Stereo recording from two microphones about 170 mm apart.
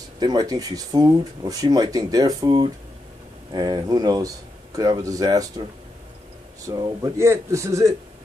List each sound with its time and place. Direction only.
0.2 s speech: 25° right (ahead or behind)
6.6 s speech: 20° right (ahead or behind)